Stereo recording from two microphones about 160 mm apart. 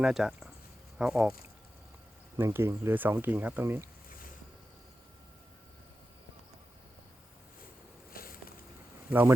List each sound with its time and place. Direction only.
0.0 s speech: centre (ahead or behind)
2.3 s speech: 15° right (ahead or behind)
8.1 s a sound: 65° left (ahead or behind)
9.0 s speech: 10° right (ahead or behind)